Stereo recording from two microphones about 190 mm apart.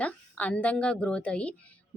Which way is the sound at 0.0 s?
5° left (ahead or behind).